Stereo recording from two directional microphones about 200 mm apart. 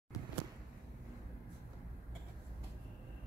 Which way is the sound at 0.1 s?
20° left (ahead or behind).